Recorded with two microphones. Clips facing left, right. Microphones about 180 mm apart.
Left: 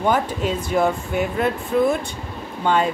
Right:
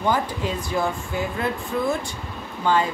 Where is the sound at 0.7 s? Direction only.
20° left (ahead or behind).